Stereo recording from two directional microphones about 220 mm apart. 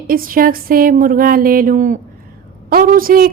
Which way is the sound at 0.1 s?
40° right (ahead or behind).